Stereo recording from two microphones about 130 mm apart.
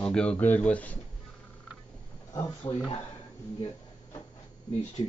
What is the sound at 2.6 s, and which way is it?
Speech, 30° left (ahead or behind).